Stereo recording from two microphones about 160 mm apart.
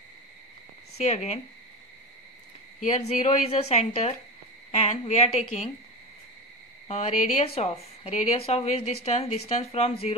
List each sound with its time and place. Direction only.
0.9 s a woman's voice: 45° left (ahead or behind)
2.8 s a woman's voice: 45° left (ahead or behind)
6.9 s a woman's voice: 40° left (ahead or behind)